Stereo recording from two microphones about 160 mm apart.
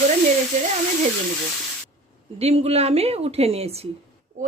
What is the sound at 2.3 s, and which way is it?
Speech, 40° right (ahead or behind).